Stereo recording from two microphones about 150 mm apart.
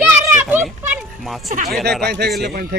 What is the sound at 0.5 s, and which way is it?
Speech, centre (ahead or behind).